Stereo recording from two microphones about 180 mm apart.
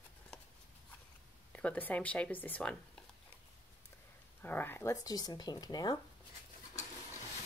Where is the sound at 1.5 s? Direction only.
10° left (ahead or behind).